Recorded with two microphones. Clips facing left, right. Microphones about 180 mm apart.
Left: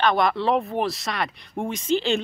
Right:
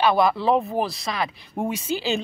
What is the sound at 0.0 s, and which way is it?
Speech, 5° right (ahead or behind).